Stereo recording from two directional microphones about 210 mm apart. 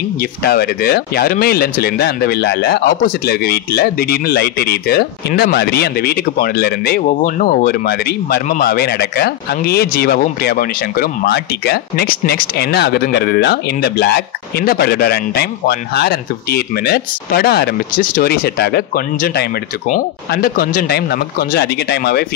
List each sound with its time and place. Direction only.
0.2 s speech: 50° left (ahead or behind)